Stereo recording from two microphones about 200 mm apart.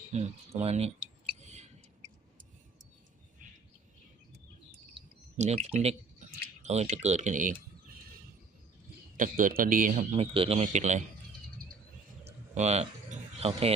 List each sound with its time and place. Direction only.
0.1 s speech: 30° right (ahead or behind)
1.4 s owl: 35° right (ahead or behind)
4.9 s a sound: 35° right (ahead or behind)
5.7 s speech: 30° right (ahead or behind)
9.1 s speech: 45° right (ahead or behind)
10.2 s speech: 30° right (ahead or behind)
12.2 s a sound: 30° right (ahead or behind)